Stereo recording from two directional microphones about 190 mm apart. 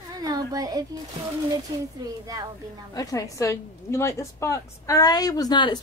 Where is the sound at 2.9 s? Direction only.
20° left (ahead or behind).